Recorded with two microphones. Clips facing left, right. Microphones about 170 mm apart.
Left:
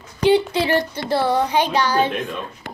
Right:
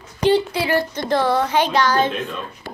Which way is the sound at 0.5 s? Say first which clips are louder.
Left 1 dB; 25° left (ahead or behind).